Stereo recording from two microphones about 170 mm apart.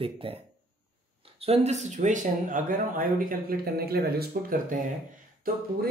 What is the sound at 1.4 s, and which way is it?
Speech, 40° right (ahead or behind).